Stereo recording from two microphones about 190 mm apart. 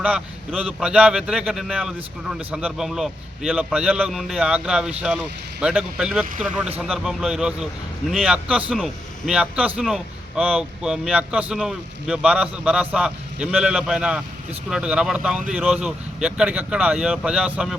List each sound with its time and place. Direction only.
0.0 s a man's voice: 5° right (ahead or behind)